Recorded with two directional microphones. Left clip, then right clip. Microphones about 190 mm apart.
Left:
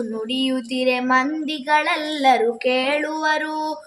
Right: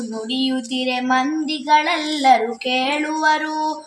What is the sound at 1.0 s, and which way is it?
Female singing, 5° left (ahead or behind).